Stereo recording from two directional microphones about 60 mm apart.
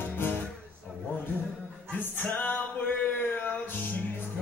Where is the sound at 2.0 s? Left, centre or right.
Left.